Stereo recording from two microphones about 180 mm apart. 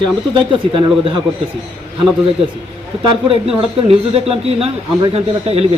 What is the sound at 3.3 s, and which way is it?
A man's voice, 35° right (ahead or behind).